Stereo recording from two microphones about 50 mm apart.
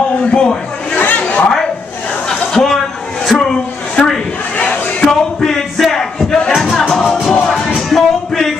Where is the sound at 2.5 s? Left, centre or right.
Centre.